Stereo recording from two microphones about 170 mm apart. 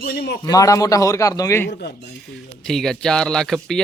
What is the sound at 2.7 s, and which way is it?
Speech, 5° left (ahead or behind).